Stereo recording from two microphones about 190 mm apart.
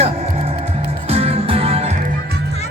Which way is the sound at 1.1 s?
30° right (ahead or behind).